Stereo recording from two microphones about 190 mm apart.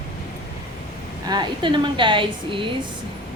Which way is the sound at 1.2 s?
25° right (ahead or behind).